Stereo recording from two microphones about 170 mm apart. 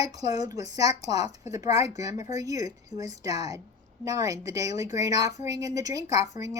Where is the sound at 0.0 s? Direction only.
20° right (ahead or behind).